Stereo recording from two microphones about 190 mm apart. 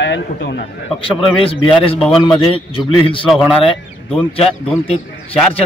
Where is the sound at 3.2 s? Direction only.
Centre (ahead or behind).